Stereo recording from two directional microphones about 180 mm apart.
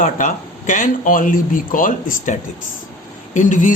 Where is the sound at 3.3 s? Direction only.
45° left (ahead or behind).